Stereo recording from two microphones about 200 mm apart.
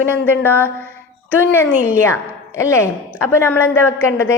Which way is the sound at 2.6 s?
15° left (ahead or behind).